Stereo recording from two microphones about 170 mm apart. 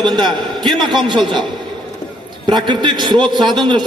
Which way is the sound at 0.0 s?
25° right (ahead or behind).